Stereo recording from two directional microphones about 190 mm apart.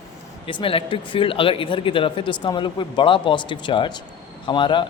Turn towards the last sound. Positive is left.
turn(degrees=25)  # may be behind; listen again after turning